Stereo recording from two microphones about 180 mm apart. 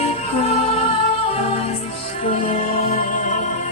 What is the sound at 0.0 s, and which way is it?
Music, 35° left (ahead or behind).